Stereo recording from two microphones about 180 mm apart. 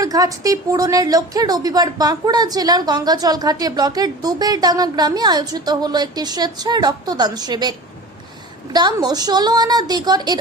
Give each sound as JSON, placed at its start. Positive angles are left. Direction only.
{"t": 0.0, "sound": "a woman's voice", "side_deg": -20}